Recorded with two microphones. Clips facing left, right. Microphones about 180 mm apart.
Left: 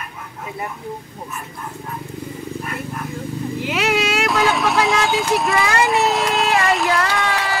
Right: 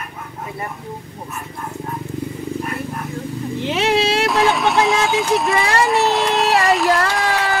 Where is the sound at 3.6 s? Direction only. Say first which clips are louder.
Right 3 dB; 25° right (ahead or behind).